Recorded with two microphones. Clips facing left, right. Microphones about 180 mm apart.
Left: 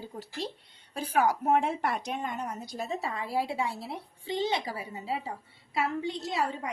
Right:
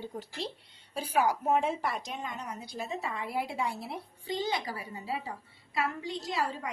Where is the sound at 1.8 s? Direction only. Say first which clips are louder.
Left 4 dB; 60° left (ahead or behind).